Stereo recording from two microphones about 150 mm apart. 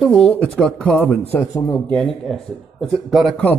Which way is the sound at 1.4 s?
20° left (ahead or behind).